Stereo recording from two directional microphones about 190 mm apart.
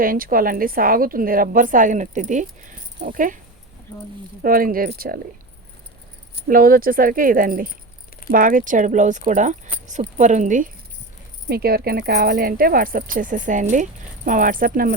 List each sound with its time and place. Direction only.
0.0 s a woman's voice: 50° right (ahead or behind)
4.4 s a woman's voice: 50° right (ahead or behind)
6.5 s a woman's voice: 50° right (ahead or behind)
11.4 s a woman's voice: 55° right (ahead or behind)